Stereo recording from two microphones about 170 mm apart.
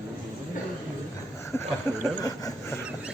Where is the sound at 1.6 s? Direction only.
20° left (ahead or behind).